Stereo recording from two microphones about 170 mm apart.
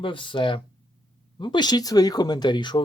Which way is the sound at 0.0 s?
30° left (ahead or behind).